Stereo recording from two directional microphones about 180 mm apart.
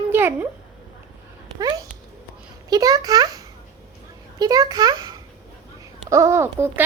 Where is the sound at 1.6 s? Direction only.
20° right (ahead or behind).